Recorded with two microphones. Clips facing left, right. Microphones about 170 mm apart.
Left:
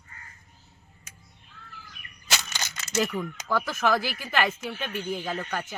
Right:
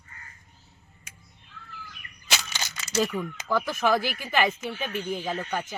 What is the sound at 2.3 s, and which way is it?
Crushing, 10° right (ahead or behind).